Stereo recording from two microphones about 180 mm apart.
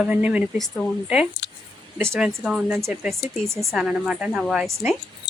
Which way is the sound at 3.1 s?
Centre (ahead or behind).